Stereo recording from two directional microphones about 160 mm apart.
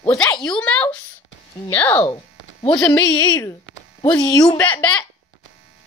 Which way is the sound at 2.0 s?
30° left (ahead or behind).